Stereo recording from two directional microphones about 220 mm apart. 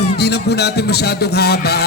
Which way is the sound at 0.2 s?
50° left (ahead or behind).